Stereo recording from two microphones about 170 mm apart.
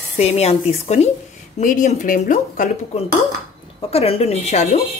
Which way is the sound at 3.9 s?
35° left (ahead or behind).